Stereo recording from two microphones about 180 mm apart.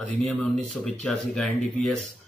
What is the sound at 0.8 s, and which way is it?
Speech, 5° left (ahead or behind).